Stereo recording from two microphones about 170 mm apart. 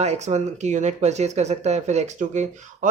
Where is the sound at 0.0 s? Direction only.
40° right (ahead or behind).